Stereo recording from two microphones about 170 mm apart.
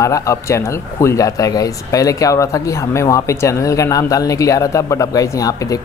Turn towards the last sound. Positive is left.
turn(degrees=20)  # may be behind; listen again after turning